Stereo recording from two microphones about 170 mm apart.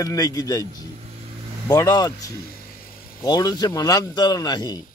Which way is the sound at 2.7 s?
60° left (ahead or behind).